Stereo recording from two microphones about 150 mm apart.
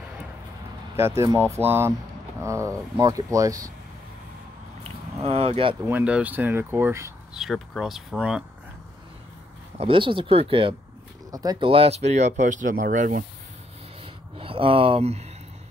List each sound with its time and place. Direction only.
0.9 s speech: 20° right (ahead or behind)
5.2 s speech: 40° right (ahead or behind)
5.8 s speech: 15° right (ahead or behind)
7.3 s speech: centre (ahead or behind)
9.8 s speech: 35° right (ahead or behind)
11.3 s speech: 25° right (ahead or behind)
11.7 s speech: 40° right (ahead or behind); by 13.2 s 60° right (ahead or behind)
14.4 s speech: 35° right (ahead or behind)